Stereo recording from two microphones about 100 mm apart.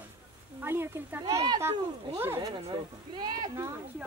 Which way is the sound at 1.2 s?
40° right (ahead or behind).